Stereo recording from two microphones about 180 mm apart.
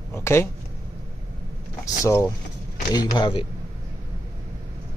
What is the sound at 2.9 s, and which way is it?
Speech, 20° left (ahead or behind).